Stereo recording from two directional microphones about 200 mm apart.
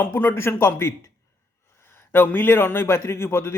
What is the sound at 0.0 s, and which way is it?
A man's voice, 10° left (ahead or behind).